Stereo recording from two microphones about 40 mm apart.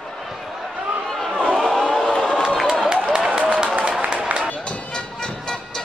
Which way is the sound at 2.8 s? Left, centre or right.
Right.